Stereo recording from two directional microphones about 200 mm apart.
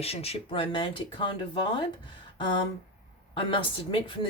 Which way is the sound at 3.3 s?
25° left (ahead or behind).